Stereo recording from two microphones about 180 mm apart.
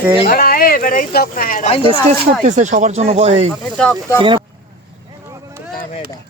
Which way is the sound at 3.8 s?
5° left (ahead or behind).